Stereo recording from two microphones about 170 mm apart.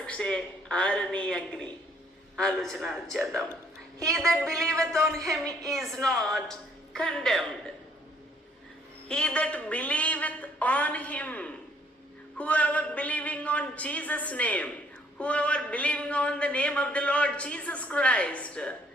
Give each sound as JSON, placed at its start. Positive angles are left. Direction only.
{"t": 0.0, "sound": "a man's voice", "side_deg": 5}
{"t": 4.6, "sound": "a man's voice", "side_deg": -15}
{"t": 5.6, "sound": "a woman's voice", "side_deg": 0}
{"t": 9.0, "sound": "a man's voice", "side_deg": 5}